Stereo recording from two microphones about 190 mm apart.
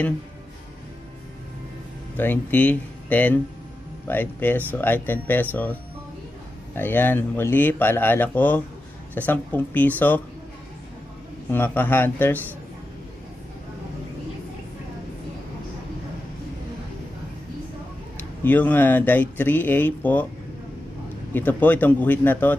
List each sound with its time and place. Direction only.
2.1 s speech: 10° left (ahead or behind)
11.5 s speech: 10° left (ahead or behind)
18.1 s speech: 10° left (ahead or behind)
21.3 s speech: 10° left (ahead or behind)